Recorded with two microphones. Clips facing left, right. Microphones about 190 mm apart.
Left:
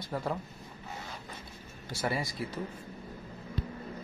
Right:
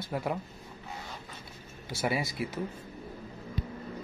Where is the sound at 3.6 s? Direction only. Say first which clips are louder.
Even; 10° right (ahead or behind).